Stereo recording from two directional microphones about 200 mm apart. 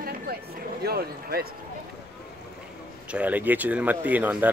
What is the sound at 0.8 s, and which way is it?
Speech, 50° right (ahead or behind).